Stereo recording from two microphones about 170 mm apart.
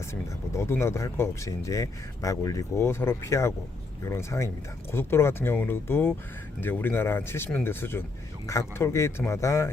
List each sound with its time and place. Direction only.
0.1 s speech: 15° left (ahead or behind)